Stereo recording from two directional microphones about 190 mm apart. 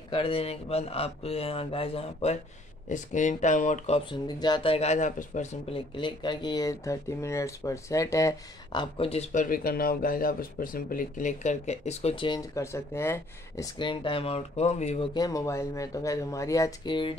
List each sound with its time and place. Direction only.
0.1 s speech: 30° left (ahead or behind)
2.9 s speech: 40° left (ahead or behind)
4.3 s speech: 20° left (ahead or behind)
8.9 s speech: 30° left (ahead or behind)
9.3 s speech: 45° left (ahead or behind)
15.1 s speech: 20° left (ahead or behind)